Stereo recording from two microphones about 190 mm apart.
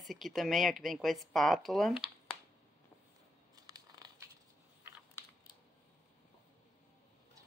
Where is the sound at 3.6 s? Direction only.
20° right (ahead or behind).